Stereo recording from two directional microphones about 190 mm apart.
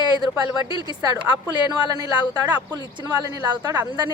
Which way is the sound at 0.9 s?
20° right (ahead or behind).